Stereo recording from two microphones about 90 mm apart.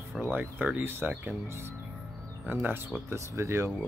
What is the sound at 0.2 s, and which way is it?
Speech, 20° right (ahead or behind).